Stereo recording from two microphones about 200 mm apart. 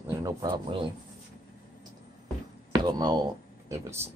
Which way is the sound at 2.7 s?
20° right (ahead or behind).